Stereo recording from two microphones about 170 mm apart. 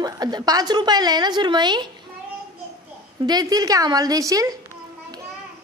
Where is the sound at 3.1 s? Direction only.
25° right (ahead or behind).